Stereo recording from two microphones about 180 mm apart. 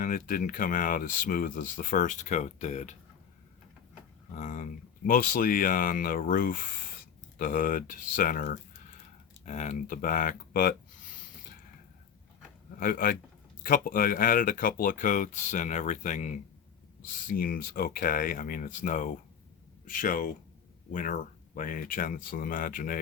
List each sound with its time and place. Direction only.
0.0 s speech: 50° left (ahead or behind)
4.4 s speech: 45° left (ahead or behind)
12.8 s speech: 55° left (ahead or behind)